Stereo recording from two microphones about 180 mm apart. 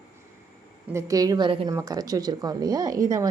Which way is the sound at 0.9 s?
15° right (ahead or behind).